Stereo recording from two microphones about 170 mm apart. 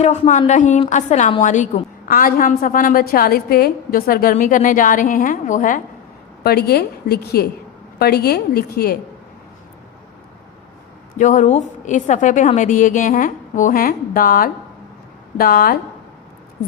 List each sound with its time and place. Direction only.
0.0 s a woman's voice: 40° left (ahead or behind)
6.4 s a woman's voice: 70° left (ahead or behind)
11.2 s a woman's voice: 45° left (ahead or behind)